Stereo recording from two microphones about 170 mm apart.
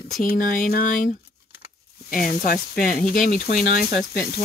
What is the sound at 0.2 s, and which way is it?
Speech, 55° left (ahead or behind).